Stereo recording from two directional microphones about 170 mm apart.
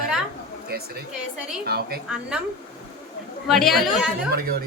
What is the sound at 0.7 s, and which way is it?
A woman's voice, 65° right (ahead or behind).